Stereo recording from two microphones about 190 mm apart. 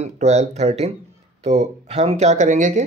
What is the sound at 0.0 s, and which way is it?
Speech, 35° right (ahead or behind).